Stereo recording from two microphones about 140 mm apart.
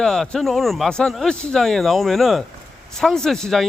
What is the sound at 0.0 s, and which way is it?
Speech, 5° left (ahead or behind).